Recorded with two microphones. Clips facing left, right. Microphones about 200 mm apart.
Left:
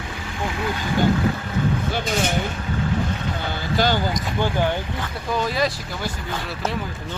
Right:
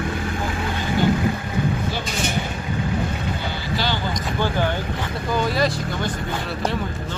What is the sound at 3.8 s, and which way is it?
Vehicle, 45° left (ahead or behind).